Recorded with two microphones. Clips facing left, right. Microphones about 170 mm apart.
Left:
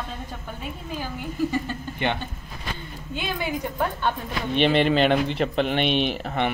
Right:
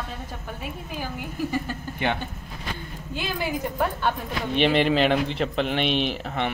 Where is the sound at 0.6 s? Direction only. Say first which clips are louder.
Left 1 dB; 10° right (ahead or behind).